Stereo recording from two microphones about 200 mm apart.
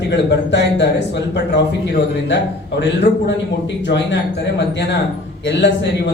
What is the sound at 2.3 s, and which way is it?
Speech, 60° left (ahead or behind).